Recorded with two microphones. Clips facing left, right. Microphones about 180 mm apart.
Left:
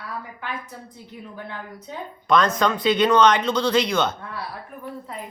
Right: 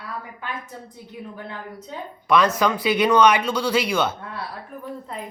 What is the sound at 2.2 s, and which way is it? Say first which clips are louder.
Speech: right 1 dB; 10° right (ahead or behind).